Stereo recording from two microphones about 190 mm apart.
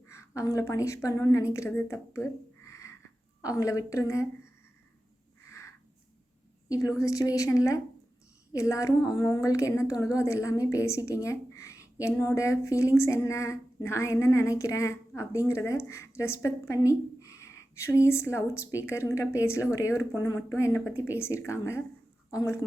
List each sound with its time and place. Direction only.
0.1 s a woman's voice: 15° left (ahead or behind)
5.5 s a sound: 15° left (ahead or behind)
6.7 s a woman's voice: 15° left (ahead or behind)
9.0 s a woman's voice: 20° left (ahead or behind)